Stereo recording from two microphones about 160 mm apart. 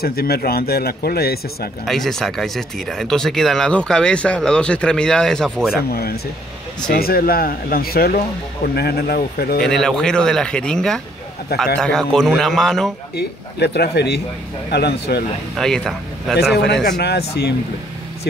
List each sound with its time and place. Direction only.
0.0 s a man's voice: 75° left (ahead or behind)
1.9 s speech: centre (ahead or behind)
5.8 s a man's voice: 75° left (ahead or behind)
9.6 s speech: 5° left (ahead or behind)
13.1 s speech: 90° left
15.5 s speech: 5° left (ahead or behind)
16.3 s speech: 90° left